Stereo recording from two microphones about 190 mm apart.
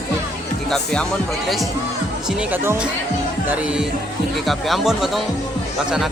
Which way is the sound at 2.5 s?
10° right (ahead or behind).